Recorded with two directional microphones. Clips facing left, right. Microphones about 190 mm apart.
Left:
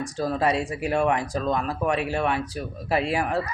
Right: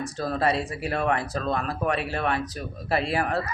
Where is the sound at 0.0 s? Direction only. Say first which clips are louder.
Left 1 dB; 15° left (ahead or behind).